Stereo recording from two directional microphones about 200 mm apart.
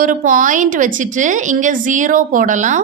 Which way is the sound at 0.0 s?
40° right (ahead or behind).